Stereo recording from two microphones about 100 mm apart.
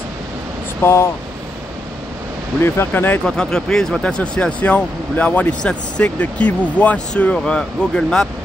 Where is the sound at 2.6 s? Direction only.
25° left (ahead or behind).